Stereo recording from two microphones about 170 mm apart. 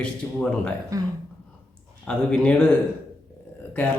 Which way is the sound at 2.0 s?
5° left (ahead or behind).